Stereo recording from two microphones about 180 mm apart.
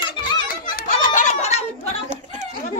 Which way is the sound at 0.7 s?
45° left (ahead or behind).